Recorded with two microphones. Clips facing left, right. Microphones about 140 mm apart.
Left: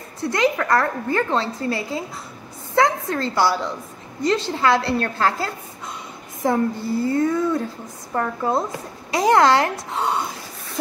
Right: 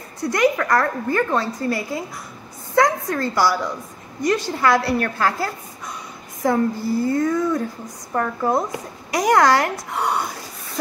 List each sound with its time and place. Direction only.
0.2 s a woman's voice: 25° left (ahead or behind)
9.1 s a woman's voice: 25° left (ahead or behind)